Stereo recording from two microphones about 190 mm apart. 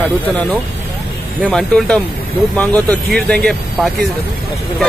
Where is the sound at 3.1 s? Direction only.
5° left (ahead or behind).